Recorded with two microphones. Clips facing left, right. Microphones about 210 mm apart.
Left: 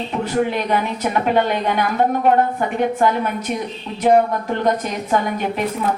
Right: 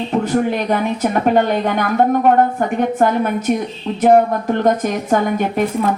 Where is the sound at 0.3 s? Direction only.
45° right (ahead or behind).